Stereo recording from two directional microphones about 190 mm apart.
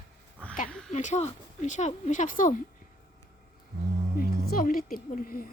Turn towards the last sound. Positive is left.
turn(degrees=50)  # may be behind; listen again after turning